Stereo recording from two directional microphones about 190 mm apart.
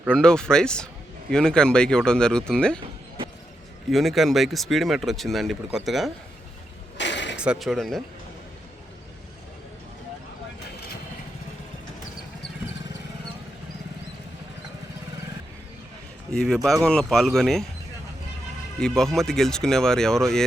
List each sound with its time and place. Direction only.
0.1 s speech: 5° left (ahead or behind)
3.8 s speech: centre (ahead or behind)
6.9 s a sound: 70° left (ahead or behind)
7.3 s speech: 5° right (ahead or behind)
16.3 s speech: 5° left (ahead or behind)
18.8 s speech: 5° left (ahead or behind)